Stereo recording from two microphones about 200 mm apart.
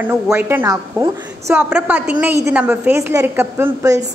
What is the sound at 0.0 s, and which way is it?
A woman's voice, 10° right (ahead or behind).